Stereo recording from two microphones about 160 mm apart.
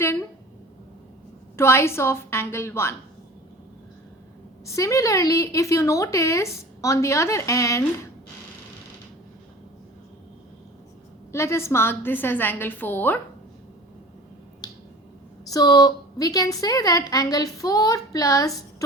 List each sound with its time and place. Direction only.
1.5 s a woman's voice: 15° left (ahead or behind)
4.6 s a woman's voice: 20° left (ahead or behind)
11.3 s a woman's voice: 15° left (ahead or behind)
14.6 s finger snapping: 25° left (ahead or behind)
15.4 s a woman's voice: 20° left (ahead or behind)